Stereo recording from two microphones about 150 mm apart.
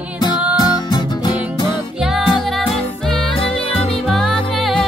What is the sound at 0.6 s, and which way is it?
Music, 25° left (ahead or behind).